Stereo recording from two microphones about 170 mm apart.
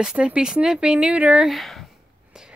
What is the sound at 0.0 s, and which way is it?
Speech, 5° right (ahead or behind).